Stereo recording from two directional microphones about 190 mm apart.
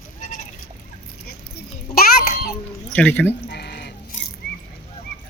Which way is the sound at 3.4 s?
55° left (ahead or behind).